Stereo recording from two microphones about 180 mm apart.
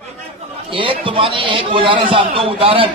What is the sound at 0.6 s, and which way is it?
A man's voice, 30° right (ahead or behind).